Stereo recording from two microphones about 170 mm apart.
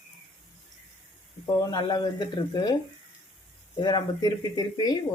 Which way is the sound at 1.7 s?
25° left (ahead or behind).